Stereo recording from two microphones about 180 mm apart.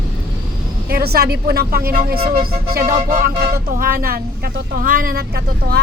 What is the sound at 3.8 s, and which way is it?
Speech, 55° right (ahead or behind).